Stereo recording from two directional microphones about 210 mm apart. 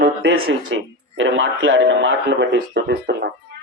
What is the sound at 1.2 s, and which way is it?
Speech, 65° right (ahead or behind).